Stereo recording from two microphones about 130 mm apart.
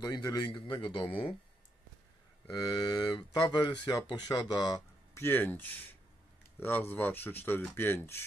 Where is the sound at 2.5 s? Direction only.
30° left (ahead or behind).